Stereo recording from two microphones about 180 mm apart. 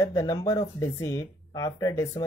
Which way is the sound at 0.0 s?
15° left (ahead or behind).